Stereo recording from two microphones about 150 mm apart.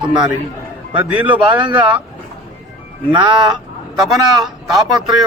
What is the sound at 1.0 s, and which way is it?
Speech, 10° right (ahead or behind).